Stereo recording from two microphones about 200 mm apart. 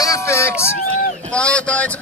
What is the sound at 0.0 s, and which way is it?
A man's voice, 15° left (ahead or behind).